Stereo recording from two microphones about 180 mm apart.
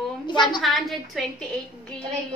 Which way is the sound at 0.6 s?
Centre (ahead or behind).